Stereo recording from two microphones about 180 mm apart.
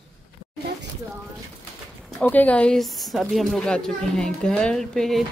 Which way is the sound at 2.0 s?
5° left (ahead or behind).